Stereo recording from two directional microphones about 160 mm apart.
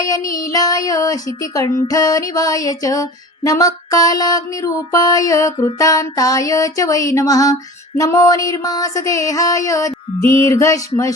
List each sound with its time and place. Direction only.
0.0 s music: 20° left (ahead or behind)
0.3 s female singing: 20° left (ahead or behind)